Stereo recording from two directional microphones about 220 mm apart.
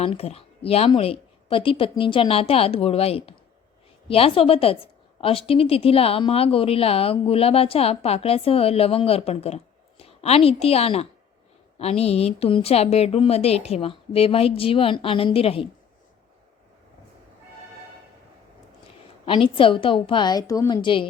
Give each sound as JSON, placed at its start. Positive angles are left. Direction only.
{"t": 0.0, "sound": "a woman's voice", "side_deg": 25}
{"t": 19.2, "sound": "a woman's voice", "side_deg": 25}